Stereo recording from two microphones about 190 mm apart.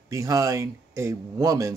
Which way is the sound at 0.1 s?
15° right (ahead or behind).